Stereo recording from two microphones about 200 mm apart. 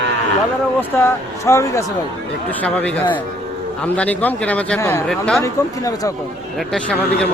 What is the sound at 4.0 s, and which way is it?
Speech, 5° left (ahead or behind).